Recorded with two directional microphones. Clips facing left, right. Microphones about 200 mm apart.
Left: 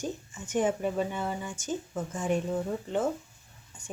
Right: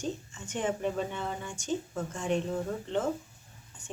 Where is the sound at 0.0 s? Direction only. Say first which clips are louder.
Even; 10° left (ahead or behind).